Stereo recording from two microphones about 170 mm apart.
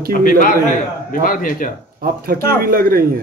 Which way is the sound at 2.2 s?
60° right (ahead or behind).